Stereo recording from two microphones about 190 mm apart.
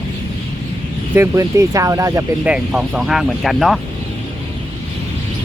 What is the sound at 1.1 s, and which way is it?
Speech, 15° right (ahead or behind).